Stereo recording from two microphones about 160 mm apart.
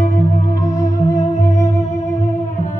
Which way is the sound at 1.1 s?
50° left (ahead or behind).